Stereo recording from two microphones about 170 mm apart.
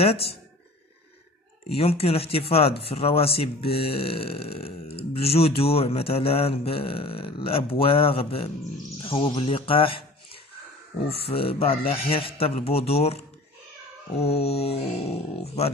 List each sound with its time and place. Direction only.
0.0 s mantra: 35° left (ahead or behind)
1.8 s mantra: 35° left (ahead or behind)
9.0 s a man's voice: 35° left (ahead or behind)
11.0 s mantra: 35° left (ahead or behind)